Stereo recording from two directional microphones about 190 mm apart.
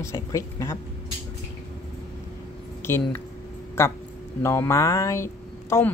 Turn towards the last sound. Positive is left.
turn(degrees=15)  # may be behind; listen again after turning